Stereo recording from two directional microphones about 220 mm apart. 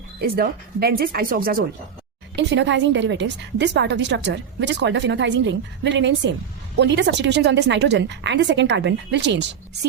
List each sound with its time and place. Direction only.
0.2 s a woman's voice: 45° right (ahead or behind)
2.3 s a woman's voice: 55° right (ahead or behind)